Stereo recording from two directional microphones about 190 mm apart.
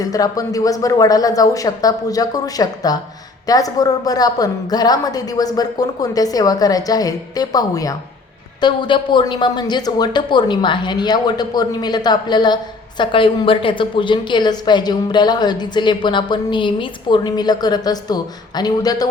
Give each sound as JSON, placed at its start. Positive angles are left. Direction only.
{"t": 0.0, "sound": "a woman's voice", "side_deg": 20}